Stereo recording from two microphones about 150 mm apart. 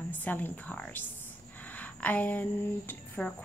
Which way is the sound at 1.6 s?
10° left (ahead or behind).